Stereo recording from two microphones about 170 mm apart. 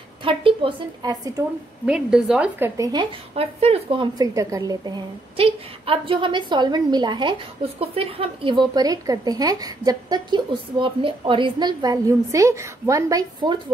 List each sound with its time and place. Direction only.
0.2 s a woman's voice: 30° right (ahead or behind)
1.9 s a woman's voice: 5° right (ahead or behind)
2.8 s speech: 25° right (ahead or behind)